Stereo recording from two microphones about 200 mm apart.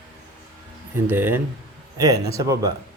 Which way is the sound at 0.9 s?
10° right (ahead or behind).